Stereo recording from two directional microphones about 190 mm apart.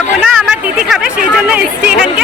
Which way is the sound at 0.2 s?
5° right (ahead or behind).